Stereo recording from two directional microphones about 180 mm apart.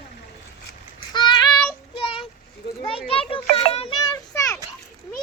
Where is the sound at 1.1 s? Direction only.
25° left (ahead or behind).